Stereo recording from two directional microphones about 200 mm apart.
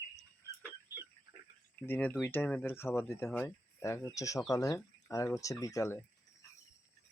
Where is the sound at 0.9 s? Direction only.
10° right (ahead or behind).